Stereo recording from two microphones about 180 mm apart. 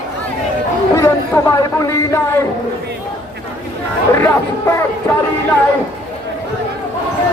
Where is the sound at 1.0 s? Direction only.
15° left (ahead or behind).